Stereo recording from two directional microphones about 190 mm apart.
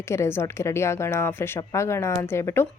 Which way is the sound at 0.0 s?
15° left (ahead or behind).